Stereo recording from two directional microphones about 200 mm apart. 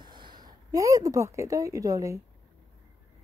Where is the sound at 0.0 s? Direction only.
20° right (ahead or behind).